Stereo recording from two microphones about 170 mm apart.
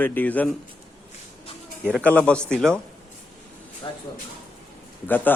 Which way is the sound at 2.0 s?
10° left (ahead or behind).